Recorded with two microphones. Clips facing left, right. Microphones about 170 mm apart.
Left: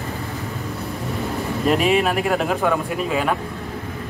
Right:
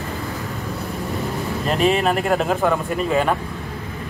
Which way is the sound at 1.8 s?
5° left (ahead or behind).